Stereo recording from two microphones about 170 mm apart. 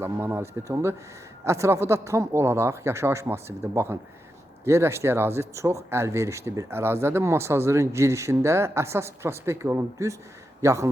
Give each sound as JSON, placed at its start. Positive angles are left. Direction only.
{"t": 0.0, "sound": "speech", "side_deg": -15}